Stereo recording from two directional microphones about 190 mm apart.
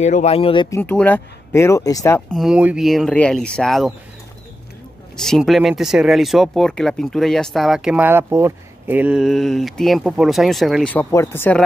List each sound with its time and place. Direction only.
0.0 s speech: 35° left (ahead or behind)
0.7 s speech: 10° left (ahead or behind)
2.3 s speech: 5° right (ahead or behind)
5.1 s speech: 5° left (ahead or behind)